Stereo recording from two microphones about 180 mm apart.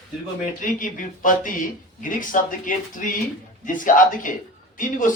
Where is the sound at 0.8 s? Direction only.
45° left (ahead or behind).